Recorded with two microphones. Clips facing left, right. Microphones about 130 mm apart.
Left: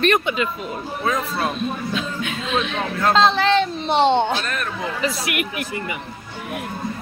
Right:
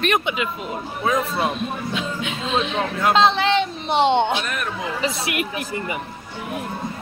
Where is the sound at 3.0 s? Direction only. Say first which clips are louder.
Left 1 dB; 15° right (ahead or behind).